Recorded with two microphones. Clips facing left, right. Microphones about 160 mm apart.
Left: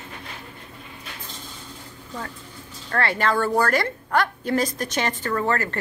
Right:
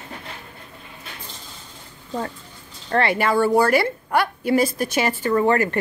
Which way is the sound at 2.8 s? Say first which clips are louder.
Right 4 dB; 25° right (ahead or behind).